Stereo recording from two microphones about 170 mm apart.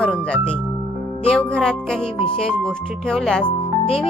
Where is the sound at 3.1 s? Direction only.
Centre (ahead or behind).